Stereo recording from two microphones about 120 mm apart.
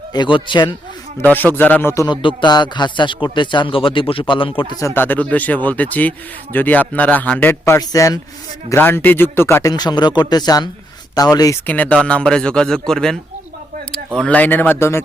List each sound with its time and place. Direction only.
0.1 s speech: 40° left (ahead or behind)
1.2 s a man's voice: 15° left (ahead or behind)
2.0 s speech: 40° left (ahead or behind)
4.8 s a man's voice: 20° left (ahead or behind)
7.6 s speech: 25° left (ahead or behind)
8.7 s speech: 20° left (ahead or behind)
9.7 s speech: 35° left (ahead or behind)
11.6 s a man's voice: 15° left (ahead or behind)
14.2 s a man's voice: 10° left (ahead or behind)